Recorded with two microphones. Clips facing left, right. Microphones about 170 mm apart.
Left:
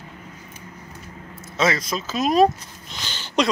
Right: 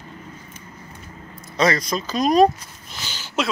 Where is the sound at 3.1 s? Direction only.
10° right (ahead or behind).